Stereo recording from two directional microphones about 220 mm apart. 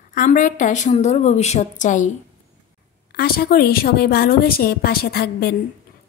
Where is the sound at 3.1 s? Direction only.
45° left (ahead or behind).